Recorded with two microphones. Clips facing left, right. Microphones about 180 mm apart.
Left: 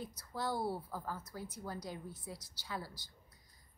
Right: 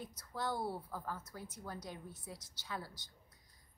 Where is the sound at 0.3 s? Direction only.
10° left (ahead or behind).